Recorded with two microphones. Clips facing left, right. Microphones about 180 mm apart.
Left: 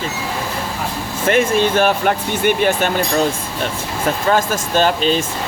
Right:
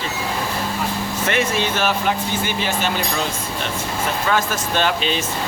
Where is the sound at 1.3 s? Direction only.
50° left (ahead or behind).